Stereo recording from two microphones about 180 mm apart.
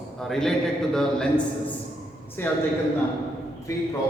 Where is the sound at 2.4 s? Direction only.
10° left (ahead or behind).